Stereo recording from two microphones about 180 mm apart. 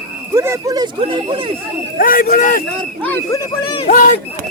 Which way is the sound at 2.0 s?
50° left (ahead or behind).